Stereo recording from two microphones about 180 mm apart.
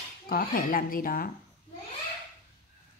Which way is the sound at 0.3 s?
55° left (ahead or behind).